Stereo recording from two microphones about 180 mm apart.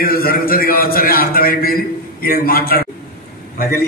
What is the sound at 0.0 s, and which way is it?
A man's voice, 55° left (ahead or behind).